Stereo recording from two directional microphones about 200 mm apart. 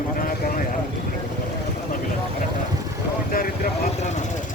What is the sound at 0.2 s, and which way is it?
Vehicle, 45° left (ahead or behind).